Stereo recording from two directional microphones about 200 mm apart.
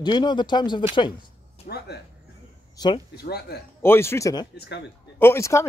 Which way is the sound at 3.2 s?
55° left (ahead or behind).